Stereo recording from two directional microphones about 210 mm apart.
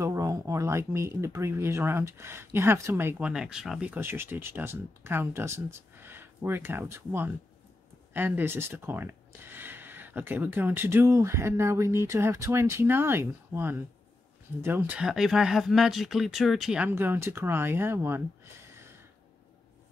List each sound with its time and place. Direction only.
0.0 s speech: 15° right (ahead or behind)